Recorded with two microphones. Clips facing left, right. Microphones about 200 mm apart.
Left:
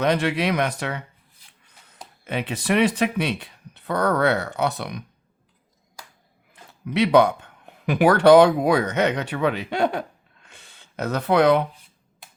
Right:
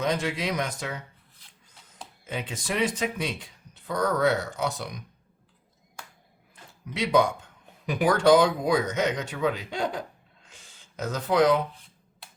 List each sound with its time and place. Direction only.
0.0 s speech: 65° left (ahead or behind)
6.5 s speech: 65° left (ahead or behind)
10.4 s a sound: 65° left (ahead or behind)